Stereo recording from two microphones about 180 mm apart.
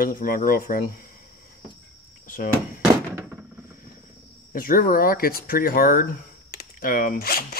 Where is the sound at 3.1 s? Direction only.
10° right (ahead or behind).